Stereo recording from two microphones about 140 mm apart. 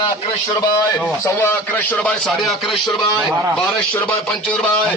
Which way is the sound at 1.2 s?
15° left (ahead or behind).